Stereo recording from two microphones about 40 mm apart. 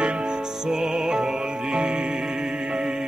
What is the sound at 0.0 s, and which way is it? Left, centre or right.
Music, right.